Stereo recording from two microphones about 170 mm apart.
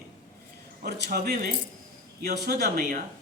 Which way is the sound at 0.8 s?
75° right (ahead or behind).